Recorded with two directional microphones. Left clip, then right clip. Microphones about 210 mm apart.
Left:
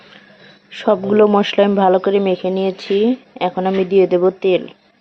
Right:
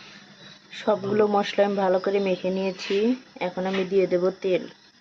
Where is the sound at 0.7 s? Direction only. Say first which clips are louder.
Left 9 dB; 25° left (ahead or behind).